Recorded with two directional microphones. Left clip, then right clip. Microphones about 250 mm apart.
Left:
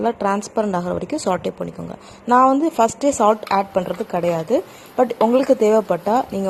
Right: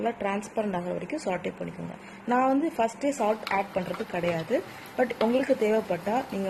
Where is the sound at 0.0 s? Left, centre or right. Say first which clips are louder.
Left 9 dB; left.